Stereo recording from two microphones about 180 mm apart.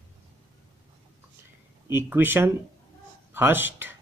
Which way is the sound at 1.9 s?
10° right (ahead or behind).